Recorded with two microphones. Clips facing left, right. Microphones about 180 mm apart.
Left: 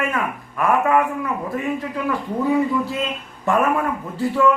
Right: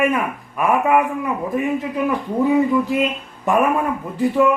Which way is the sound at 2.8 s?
15° right (ahead or behind).